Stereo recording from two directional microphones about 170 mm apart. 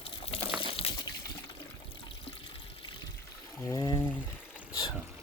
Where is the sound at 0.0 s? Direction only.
35° left (ahead or behind).